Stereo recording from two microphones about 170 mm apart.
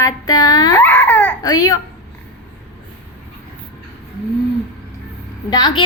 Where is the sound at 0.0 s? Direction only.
20° left (ahead or behind).